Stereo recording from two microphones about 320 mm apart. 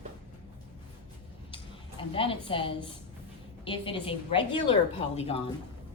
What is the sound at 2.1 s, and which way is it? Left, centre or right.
A woman's voice, centre.